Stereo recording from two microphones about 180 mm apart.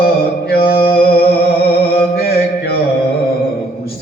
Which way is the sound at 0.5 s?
60° left (ahead or behind).